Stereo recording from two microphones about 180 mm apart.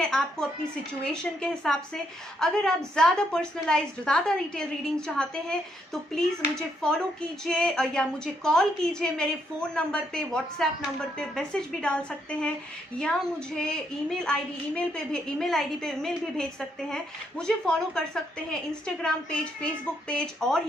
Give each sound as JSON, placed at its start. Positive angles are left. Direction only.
{"t": 0.0, "sound": "a woman's voice", "side_deg": 5}
{"t": 14.3, "sound": "a woman's voice", "side_deg": 5}